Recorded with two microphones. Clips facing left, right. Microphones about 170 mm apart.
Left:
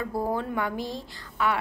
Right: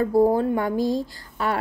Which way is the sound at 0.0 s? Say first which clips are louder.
Right 10 dB; 40° right (ahead or behind).